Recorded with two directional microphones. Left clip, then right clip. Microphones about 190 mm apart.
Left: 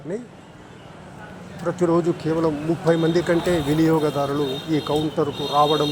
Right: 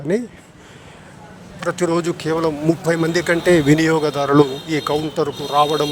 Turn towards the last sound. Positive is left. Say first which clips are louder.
# right 2 dB
turn(degrees=-60)  # may be behind; listen again after turning